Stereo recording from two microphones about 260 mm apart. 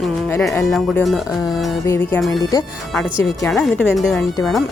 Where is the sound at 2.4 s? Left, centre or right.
Centre.